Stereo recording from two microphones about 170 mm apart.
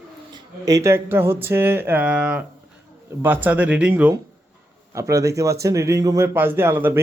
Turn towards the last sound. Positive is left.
turn(degrees=-15)  # may be behind; listen again after turning